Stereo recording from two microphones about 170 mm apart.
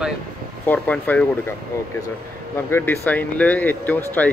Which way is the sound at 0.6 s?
10° left (ahead or behind).